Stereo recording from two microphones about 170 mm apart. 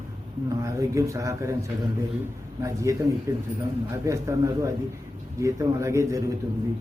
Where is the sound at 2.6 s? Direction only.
20° right (ahead or behind).